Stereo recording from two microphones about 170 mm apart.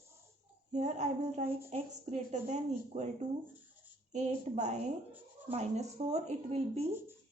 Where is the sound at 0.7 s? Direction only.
45° right (ahead or behind).